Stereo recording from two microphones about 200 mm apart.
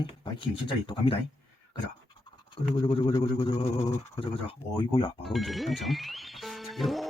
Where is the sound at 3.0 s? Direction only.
20° left (ahead or behind).